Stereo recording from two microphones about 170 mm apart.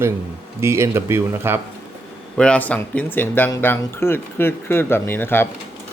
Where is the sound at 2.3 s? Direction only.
5° left (ahead or behind).